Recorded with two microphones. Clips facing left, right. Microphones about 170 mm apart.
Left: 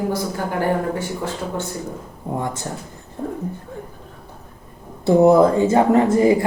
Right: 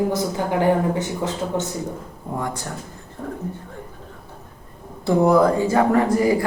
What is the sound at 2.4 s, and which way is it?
Speech, 25° left (ahead or behind).